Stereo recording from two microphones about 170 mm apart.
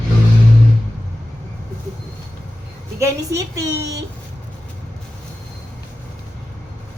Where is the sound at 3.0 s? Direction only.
20° right (ahead or behind).